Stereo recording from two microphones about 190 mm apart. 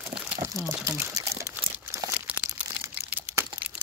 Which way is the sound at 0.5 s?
15° right (ahead or behind).